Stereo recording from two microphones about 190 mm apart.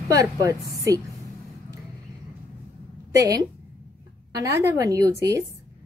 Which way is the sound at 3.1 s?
20° right (ahead or behind).